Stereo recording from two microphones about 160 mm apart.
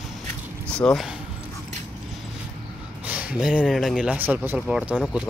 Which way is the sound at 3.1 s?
10° right (ahead or behind).